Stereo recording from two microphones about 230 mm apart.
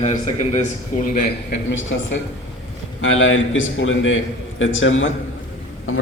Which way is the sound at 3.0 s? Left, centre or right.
Left.